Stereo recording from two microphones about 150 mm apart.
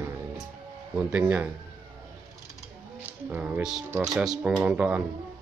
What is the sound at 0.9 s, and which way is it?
Speech, 10° right (ahead or behind).